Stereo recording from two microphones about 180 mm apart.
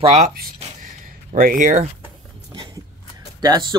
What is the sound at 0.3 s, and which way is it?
Speech, 55° right (ahead or behind).